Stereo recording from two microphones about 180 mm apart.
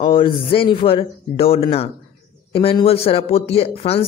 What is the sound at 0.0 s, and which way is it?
A woman's voice, 25° left (ahead or behind).